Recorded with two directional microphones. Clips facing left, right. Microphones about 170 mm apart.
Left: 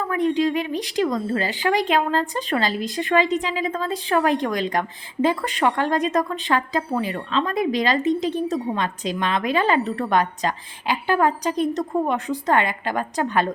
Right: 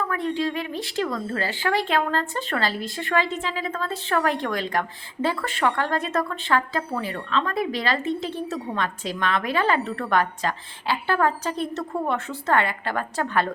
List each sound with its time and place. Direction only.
0.1 s speech: 15° left (ahead or behind)